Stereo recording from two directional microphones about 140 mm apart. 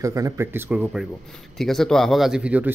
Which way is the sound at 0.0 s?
25° right (ahead or behind).